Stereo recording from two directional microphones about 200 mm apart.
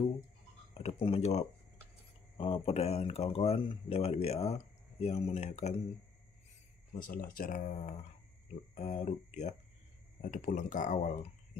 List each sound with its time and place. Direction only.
0.7 s speech: 30° left (ahead or behind)
6.9 s speech: 45° left (ahead or behind)